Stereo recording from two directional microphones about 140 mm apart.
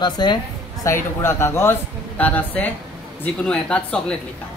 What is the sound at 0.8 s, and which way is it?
Speech, 20° left (ahead or behind).